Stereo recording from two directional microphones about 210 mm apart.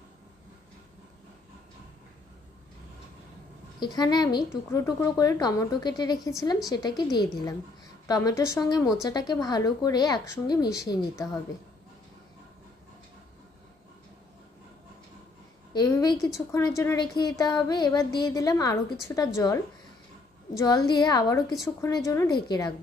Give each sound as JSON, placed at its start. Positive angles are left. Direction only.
{"t": 3.8, "sound": "a woman's voice", "side_deg": 20}
{"t": 15.7, "sound": "a woman's voice", "side_deg": 20}